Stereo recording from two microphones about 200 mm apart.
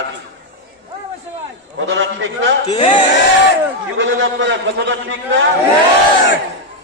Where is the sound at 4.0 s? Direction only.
65° right (ahead or behind).